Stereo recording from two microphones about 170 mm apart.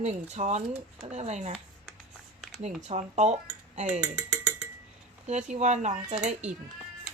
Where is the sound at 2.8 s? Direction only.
40° right (ahead or behind).